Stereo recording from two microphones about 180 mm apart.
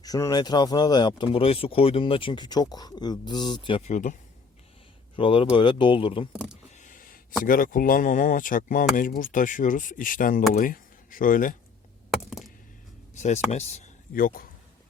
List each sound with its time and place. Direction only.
0.0 s speech: 20° left (ahead or behind); by 4.2 s 40° left (ahead or behind)
5.1 s speech: 30° left (ahead or behind)
6.3 s speech: 5° right (ahead or behind)
6.7 s a sound: 45° left (ahead or behind)
7.4 s speech: 50° left (ahead or behind)
12.1 s chop: centre (ahead or behind)
13.1 s speech: 40° left (ahead or behind)